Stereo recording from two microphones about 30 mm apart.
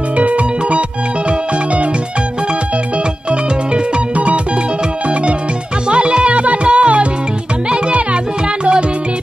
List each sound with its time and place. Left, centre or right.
0.2 s music: right
3.3 s music: right
5.9 s music: right